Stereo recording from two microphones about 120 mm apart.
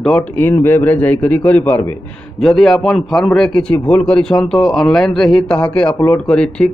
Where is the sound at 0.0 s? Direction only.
10° left (ahead or behind).